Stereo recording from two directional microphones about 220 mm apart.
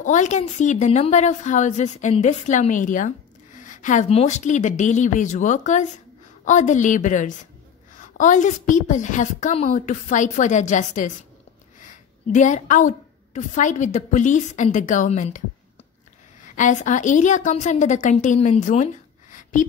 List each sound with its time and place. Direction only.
0.0 s a woman's voice: 35° left (ahead or behind)
16.5 s a woman's voice: 35° left (ahead or behind)